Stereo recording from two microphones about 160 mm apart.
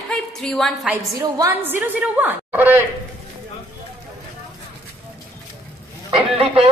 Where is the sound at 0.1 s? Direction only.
5° left (ahead or behind).